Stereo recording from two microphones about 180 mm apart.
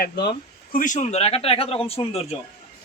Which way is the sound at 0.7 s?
45° left (ahead or behind).